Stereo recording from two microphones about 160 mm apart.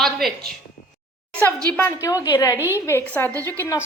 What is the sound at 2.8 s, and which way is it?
Speech, 15° left (ahead or behind).